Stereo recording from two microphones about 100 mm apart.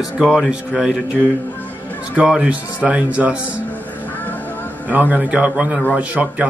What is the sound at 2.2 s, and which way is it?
Speech, 10° right (ahead or behind).